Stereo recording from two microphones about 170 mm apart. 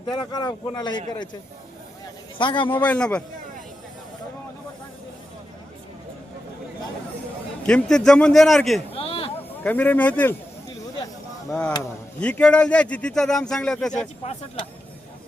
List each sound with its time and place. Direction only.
0.0 s speech: 25° left (ahead or behind)
2.4 s speech: 30° left (ahead or behind)
2.7 s a man's voice: 10° left (ahead or behind)
7.7 s speech: 5° left (ahead or behind)
8.9 s a sound: 35° left (ahead or behind)
9.6 s a man's voice: 10° left (ahead or behind)
11.4 s speech: 5° left (ahead or behind)